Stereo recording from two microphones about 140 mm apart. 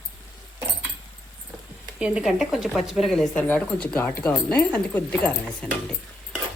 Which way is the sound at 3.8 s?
10° left (ahead or behind).